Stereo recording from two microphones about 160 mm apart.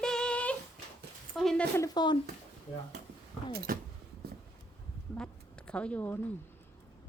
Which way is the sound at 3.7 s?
65° right (ahead or behind).